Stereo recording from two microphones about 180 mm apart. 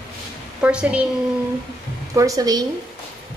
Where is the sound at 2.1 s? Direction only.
20° right (ahead or behind).